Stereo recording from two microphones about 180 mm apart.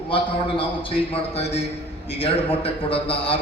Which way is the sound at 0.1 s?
30° left (ahead or behind).